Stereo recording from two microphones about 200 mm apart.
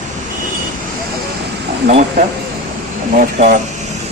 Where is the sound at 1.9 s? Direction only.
35° right (ahead or behind).